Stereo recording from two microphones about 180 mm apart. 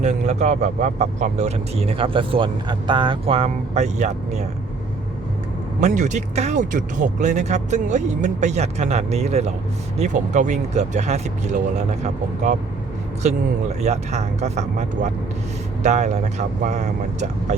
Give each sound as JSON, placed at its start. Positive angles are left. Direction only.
{"t": 0.0, "sound": "speech", "side_deg": -40}
{"t": 5.8, "sound": "speech", "side_deg": -45}